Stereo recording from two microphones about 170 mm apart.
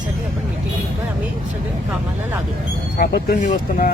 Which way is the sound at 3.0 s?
50° left (ahead or behind).